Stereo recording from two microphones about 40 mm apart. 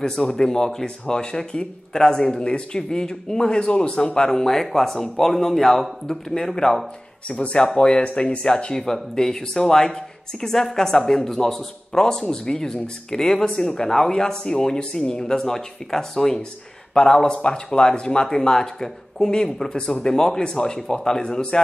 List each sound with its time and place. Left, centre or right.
0.0 s speech: centre
4.3 s speech: centre
8.8 s speech: centre